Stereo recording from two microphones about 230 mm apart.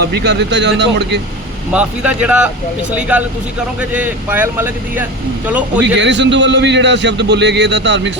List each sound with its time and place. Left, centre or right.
0.0 s a man's voice: right
1.7 s speech: centre
5.8 s a man's voice: right